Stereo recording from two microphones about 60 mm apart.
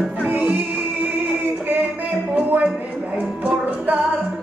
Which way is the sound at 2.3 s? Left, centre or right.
Right.